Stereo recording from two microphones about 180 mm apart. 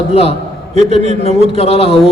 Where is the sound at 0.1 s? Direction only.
35° left (ahead or behind).